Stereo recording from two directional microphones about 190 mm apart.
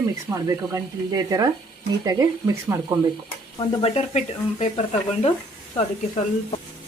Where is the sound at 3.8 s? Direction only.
35° left (ahead or behind).